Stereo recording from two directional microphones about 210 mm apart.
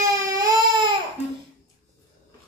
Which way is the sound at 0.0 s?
15° right (ahead or behind).